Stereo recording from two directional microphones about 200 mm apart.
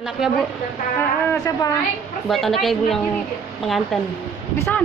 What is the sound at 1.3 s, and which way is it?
Speech, 15° left (ahead or behind).